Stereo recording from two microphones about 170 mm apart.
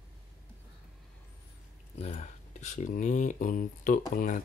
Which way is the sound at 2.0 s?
45° left (ahead or behind).